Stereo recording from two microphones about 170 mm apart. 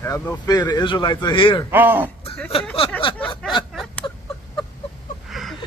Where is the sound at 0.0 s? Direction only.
20° left (ahead or behind).